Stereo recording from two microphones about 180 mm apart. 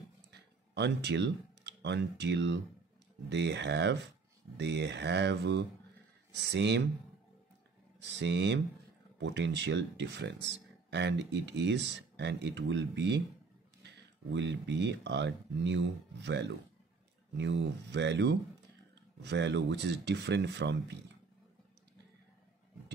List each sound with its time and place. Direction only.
0.3 s speech: 70° right (ahead or behind)
8.2 s speech: 75° right (ahead or behind)